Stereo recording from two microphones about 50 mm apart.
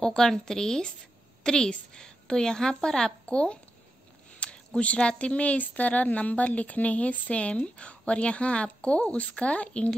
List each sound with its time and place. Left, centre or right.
0.0 s a woman's voice: centre